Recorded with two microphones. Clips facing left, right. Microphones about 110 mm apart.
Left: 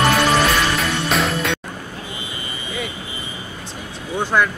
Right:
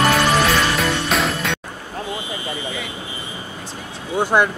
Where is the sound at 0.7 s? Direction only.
Centre (ahead or behind).